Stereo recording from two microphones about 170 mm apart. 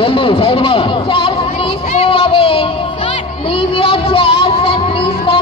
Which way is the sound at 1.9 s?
35° left (ahead or behind).